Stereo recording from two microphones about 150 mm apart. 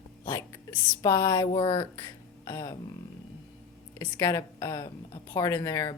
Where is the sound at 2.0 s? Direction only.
20° left (ahead or behind).